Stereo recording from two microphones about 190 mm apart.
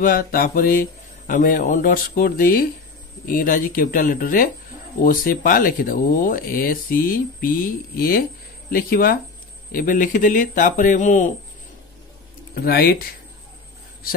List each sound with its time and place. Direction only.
0.0 s speech: 50° left (ahead or behind)
12.5 s speech: 55° left (ahead or behind)